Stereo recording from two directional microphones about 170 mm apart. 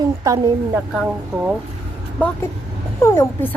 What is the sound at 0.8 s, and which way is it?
Speech, 5° right (ahead or behind).